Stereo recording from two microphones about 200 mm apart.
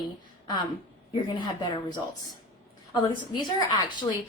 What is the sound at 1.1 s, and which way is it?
A woman's voice, 25° left (ahead or behind).